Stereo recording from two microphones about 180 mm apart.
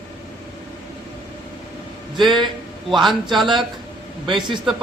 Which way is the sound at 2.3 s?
25° right (ahead or behind).